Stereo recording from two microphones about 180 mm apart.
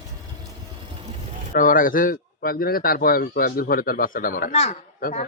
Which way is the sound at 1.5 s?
50° left (ahead or behind).